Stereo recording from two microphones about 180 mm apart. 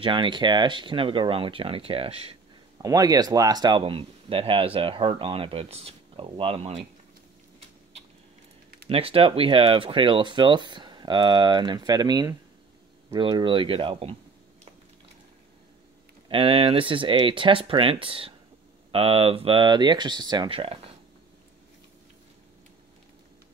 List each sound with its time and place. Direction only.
0.0 s speech: 25° right (ahead or behind)
2.8 s speech: 20° right (ahead or behind)
8.8 s speech: 30° right (ahead or behind)
16.3 s speech: 30° right (ahead or behind)